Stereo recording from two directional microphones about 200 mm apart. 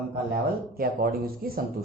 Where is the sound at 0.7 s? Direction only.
50° right (ahead or behind).